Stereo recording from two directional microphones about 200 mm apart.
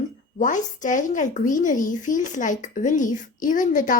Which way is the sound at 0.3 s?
40° left (ahead or behind).